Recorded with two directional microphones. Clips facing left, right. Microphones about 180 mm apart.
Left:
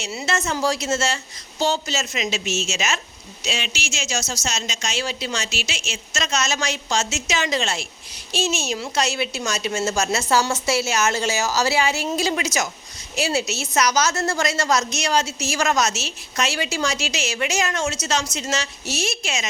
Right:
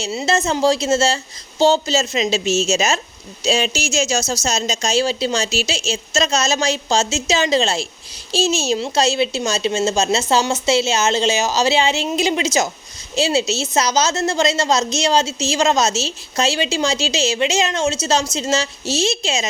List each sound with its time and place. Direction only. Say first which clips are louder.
0.0 s a woman's voice: right 6 dB; 25° right (ahead or behind)